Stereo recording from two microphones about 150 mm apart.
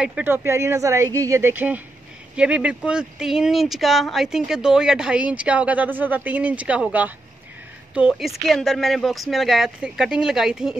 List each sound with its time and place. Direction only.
0.0 s speech: 10° right (ahead or behind)